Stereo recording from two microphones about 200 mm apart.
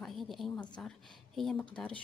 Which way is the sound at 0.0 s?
Centre (ahead or behind).